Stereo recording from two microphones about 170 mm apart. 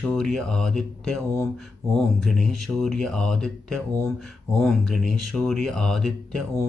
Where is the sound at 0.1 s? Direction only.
5° left (ahead or behind).